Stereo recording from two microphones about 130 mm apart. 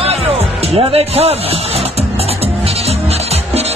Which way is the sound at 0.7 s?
50° right (ahead or behind).